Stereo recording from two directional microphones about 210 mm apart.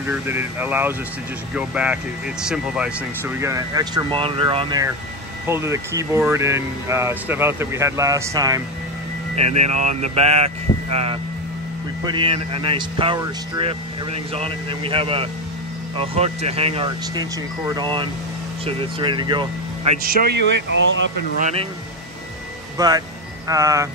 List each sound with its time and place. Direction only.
0.0 s speech: 10° right (ahead or behind)
9.3 s speech: 30° right (ahead or behind)
20.4 s speech: 60° right (ahead or behind)
21.4 s speech: 30° right (ahead or behind)
22.8 s speech: 20° right (ahead or behind)